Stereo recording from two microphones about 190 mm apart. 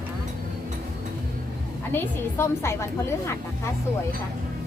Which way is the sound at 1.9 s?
15° left (ahead or behind).